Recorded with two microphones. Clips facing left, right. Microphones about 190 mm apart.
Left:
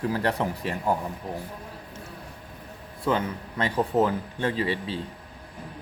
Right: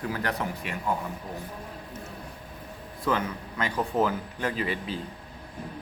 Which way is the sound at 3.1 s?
25° left (ahead or behind).